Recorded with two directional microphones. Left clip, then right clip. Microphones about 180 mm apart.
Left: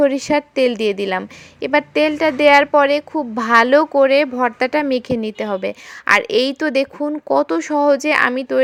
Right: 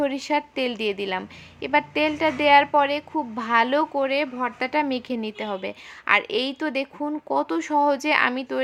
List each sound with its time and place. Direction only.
0.0 s speech: 35° left (ahead or behind)